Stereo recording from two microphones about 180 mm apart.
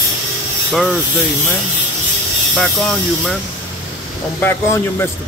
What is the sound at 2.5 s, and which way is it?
Speech, 5° left (ahead or behind).